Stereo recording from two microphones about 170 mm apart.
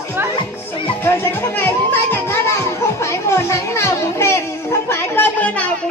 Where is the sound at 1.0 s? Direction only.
15° left (ahead or behind).